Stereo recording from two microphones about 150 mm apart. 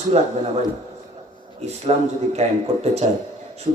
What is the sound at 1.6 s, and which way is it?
A man's voice, 45° right (ahead or behind).